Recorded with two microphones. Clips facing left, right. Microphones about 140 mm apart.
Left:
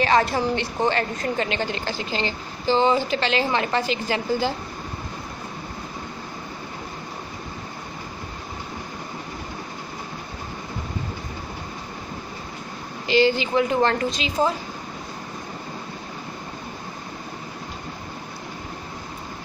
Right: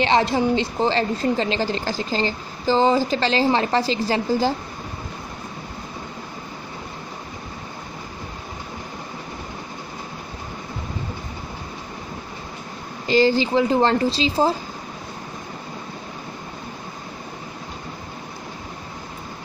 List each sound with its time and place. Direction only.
0.0 s a woman's voice: 25° right (ahead or behind)
13.1 s a woman's voice: 40° right (ahead or behind)